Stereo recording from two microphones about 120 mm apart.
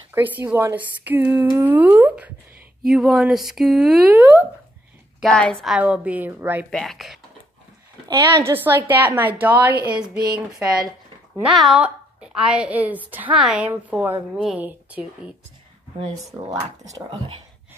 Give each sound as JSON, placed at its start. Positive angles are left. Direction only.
{"t": 0.1, "sound": "a woman's voice", "side_deg": -15}
{"t": 2.9, "sound": "speech", "side_deg": -5}
{"t": 4.1, "sound": "speech", "side_deg": -20}
{"t": 5.2, "sound": "a woman's voice", "side_deg": 5}
{"t": 5.7, "sound": "a woman's voice", "side_deg": -10}
{"t": 6.7, "sound": "speech", "side_deg": 0}
{"t": 8.1, "sound": "a woman's voice", "side_deg": -20}
{"t": 11.4, "sound": "a woman's voice", "side_deg": -5}